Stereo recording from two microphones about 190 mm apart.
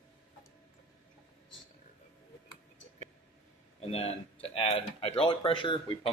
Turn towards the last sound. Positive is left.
turn(degrees=25)  # may be behind; listen again after turning